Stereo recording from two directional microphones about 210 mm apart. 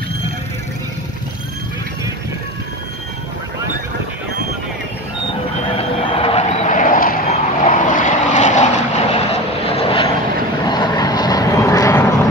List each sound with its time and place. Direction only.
5.8 s vehicle: 25° left (ahead or behind)